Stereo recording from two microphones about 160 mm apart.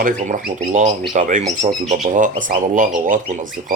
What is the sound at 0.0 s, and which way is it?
Speech, 50° right (ahead or behind).